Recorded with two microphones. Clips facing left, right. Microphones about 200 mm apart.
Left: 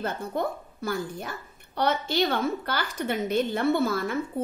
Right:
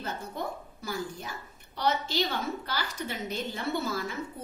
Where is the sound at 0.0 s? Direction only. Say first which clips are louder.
Left 6 dB; 55° left (ahead or behind).